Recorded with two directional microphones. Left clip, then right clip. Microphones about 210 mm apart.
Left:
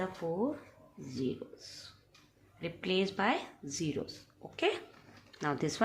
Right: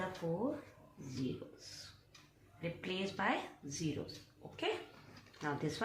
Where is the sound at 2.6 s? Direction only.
50° left (ahead or behind).